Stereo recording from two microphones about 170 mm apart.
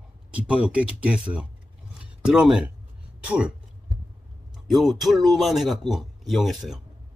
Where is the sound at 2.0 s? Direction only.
5° right (ahead or behind).